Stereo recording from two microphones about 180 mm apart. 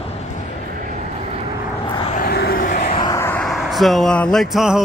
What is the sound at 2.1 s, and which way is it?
Vehicle, 55° left (ahead or behind).